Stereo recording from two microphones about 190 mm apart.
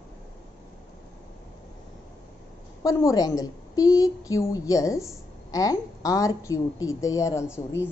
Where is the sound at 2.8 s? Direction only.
15° left (ahead or behind).